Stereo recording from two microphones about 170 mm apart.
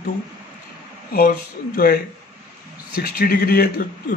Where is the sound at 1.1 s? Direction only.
60° left (ahead or behind).